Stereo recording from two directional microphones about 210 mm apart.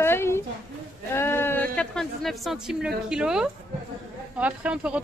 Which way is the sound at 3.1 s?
5° right (ahead or behind).